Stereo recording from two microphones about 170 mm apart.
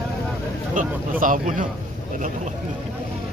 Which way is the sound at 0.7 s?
50° right (ahead or behind).